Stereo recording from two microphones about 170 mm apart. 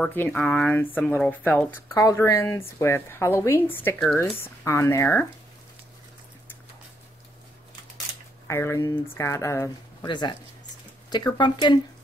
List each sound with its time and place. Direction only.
0.0 s a woman's voice: 10° left (ahead or behind)
8.5 s a woman's voice: 15° left (ahead or behind)